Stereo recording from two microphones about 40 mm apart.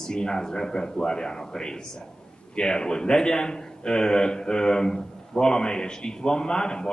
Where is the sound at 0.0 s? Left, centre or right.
Centre.